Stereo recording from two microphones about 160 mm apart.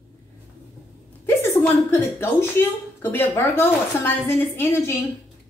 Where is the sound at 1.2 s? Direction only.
15° left (ahead or behind).